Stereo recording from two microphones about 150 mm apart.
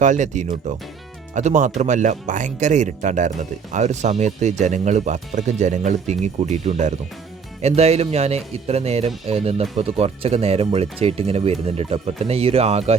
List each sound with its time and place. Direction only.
0.0 s speech: 55° right (ahead or behind)